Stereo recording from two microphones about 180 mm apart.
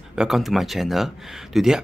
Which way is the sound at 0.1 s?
5° right (ahead or behind).